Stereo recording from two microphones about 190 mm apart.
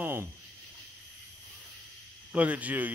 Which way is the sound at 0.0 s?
10° right (ahead or behind).